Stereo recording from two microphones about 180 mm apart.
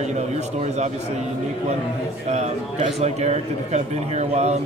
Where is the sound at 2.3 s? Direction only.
40° right (ahead or behind).